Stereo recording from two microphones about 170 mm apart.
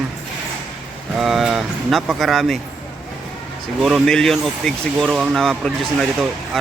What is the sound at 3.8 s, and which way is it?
Speech, 5° right (ahead or behind).